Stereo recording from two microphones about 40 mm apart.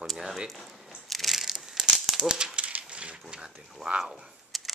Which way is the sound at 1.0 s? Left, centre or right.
Centre.